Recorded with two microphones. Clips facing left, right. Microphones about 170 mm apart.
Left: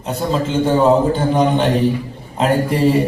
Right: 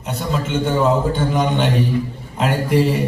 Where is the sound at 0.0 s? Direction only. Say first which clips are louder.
Left 4 dB; 30° left (ahead or behind).